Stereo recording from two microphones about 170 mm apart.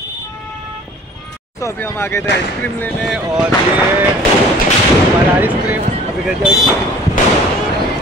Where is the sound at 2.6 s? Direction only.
10° left (ahead or behind).